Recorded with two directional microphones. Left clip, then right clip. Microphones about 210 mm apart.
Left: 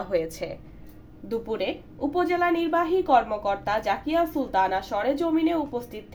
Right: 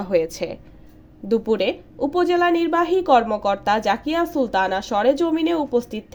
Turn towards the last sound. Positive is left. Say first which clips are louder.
# right 5 dB
turn(degrees=-35)  # may be behind; listen again after turning